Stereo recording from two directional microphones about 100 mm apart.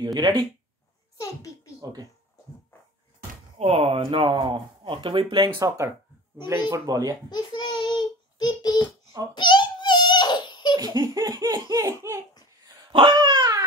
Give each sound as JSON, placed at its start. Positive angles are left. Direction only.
{"t": 0.0, "sound": "speech", "side_deg": -45}
{"t": 1.1, "sound": "a child's voice", "side_deg": 35}
{"t": 1.8, "sound": "speech", "side_deg": -40}
{"t": 3.5, "sound": "speech", "side_deg": -85}
{"t": 4.0, "sound": "speech", "side_deg": -55}
{"t": 6.3, "sound": "speech", "side_deg": -25}
{"t": 6.7, "sound": "speech", "side_deg": -40}
{"t": 7.2, "sound": "child singing", "side_deg": 50}
{"t": 9.3, "sound": "baby cry", "side_deg": 50}
{"t": 10.8, "sound": "speech", "side_deg": -40}
{"t": 12.9, "sound": "a sound", "side_deg": -55}